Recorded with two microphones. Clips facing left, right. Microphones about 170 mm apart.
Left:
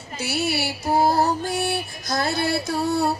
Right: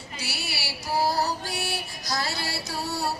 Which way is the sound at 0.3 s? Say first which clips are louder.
Left 13 dB; 55° left (ahead or behind).